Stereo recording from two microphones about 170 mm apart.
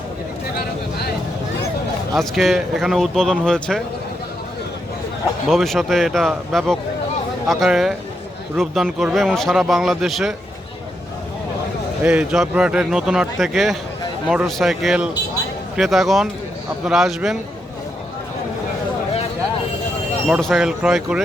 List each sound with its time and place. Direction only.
0.6 s a sound: 65° left (ahead or behind)
2.1 s speech: centre (ahead or behind)
5.5 s speech: centre (ahead or behind)
12.0 s speech: 5° right (ahead or behind)
20.2 s speech: centre (ahead or behind)